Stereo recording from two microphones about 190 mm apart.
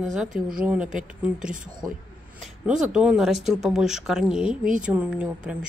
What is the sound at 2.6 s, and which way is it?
A woman's voice, 5° right (ahead or behind).